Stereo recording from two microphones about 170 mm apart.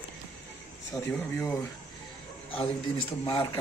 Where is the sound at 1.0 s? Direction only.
15° left (ahead or behind).